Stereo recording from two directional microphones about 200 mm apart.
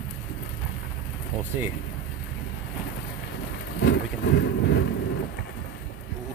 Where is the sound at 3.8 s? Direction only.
65° left (ahead or behind).